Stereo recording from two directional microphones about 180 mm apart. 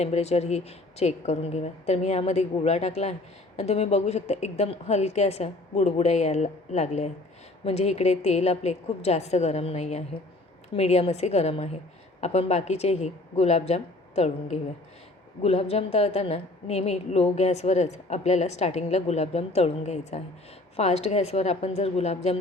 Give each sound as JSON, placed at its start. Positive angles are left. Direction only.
{"t": 0.0, "sound": "a woman's voice", "side_deg": 35}